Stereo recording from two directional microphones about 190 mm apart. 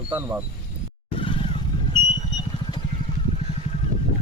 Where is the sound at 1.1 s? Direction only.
25° left (ahead or behind).